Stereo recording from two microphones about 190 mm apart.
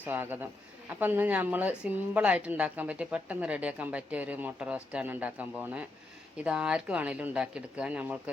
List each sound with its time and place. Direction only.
0.0 s a woman's voice: 10° right (ahead or behind)